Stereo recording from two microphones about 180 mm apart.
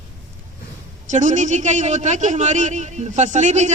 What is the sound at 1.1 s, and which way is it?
A man's voice, 45° right (ahead or behind).